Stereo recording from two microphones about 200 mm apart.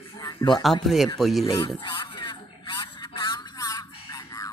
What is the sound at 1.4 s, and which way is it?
Speech, 20° left (ahead or behind).